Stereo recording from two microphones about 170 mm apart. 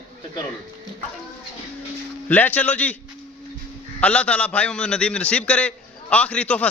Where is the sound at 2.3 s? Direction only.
10° left (ahead or behind).